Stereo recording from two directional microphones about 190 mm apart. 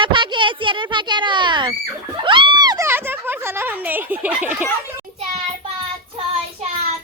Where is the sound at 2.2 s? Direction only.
25° right (ahead or behind); by 4.7 s 10° right (ahead or behind).